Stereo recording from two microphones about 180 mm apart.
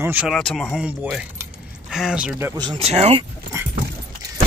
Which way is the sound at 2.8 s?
35° right (ahead or behind).